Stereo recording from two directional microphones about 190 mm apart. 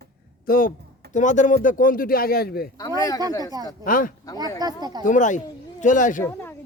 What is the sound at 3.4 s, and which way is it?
Speech, 20° right (ahead or behind).